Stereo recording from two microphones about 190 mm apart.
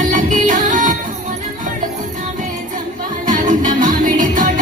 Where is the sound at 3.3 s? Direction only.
45° right (ahead or behind).